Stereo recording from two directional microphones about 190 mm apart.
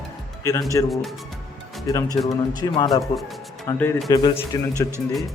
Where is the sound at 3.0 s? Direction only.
Centre (ahead or behind).